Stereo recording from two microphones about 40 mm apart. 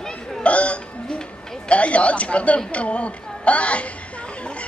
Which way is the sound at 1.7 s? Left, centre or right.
Left.